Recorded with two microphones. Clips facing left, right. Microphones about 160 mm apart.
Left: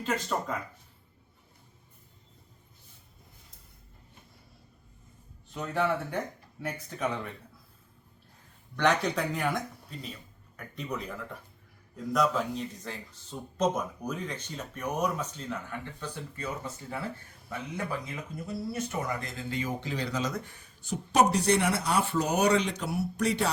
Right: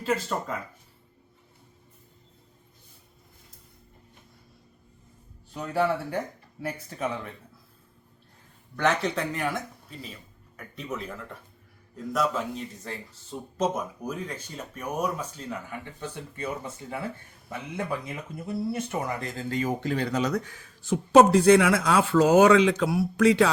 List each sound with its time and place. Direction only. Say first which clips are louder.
0.0 s speech: right 3 dB; 5° right (ahead or behind)
5.5 s speech: right 3 dB; 5° right (ahead or behind)
8.7 s speech: right 1 dB; centre (ahead or behind); by 16.7 s 25° right (ahead or behind)
18.3 s speech: right 4 dB; 25° right (ahead or behind); by 23.5 s 90° right